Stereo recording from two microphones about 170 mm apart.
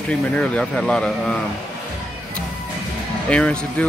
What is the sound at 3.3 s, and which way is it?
Speech, 5° left (ahead or behind).